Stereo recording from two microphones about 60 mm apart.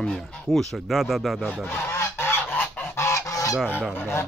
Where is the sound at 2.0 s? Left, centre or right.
Left.